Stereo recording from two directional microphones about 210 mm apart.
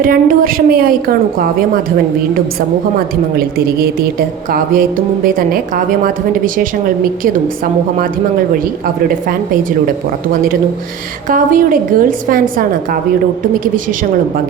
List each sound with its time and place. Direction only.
0.0 s a woman's voice: 45° right (ahead or behind)
4.5 s a woman's voice: 45° right (ahead or behind)
11.3 s a woman's voice: 40° right (ahead or behind)